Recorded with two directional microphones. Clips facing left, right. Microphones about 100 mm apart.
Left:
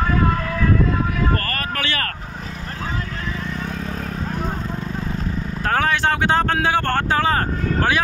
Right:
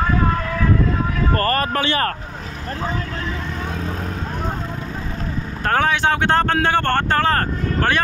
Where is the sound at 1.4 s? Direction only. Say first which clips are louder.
Right 7 dB; 30° right (ahead or behind).